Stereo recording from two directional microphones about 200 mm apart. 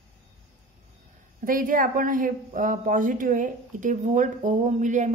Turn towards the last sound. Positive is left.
turn(degrees=-40)  # may be behind; listen again after turning